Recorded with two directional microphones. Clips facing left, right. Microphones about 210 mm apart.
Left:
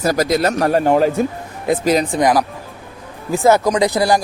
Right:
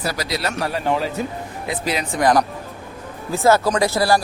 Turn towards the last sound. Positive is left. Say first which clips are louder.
# left 3 dB
turn(degrees=15)  # may be behind; listen again after turning